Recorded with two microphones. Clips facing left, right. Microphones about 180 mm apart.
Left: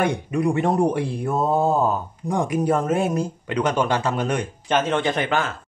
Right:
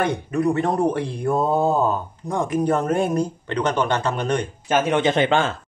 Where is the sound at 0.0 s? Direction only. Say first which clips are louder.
Even; 10° left (ahead or behind).